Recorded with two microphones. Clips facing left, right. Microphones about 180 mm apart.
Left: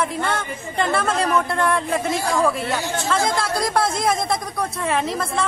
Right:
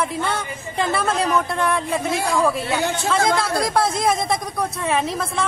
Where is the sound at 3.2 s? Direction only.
60° right (ahead or behind).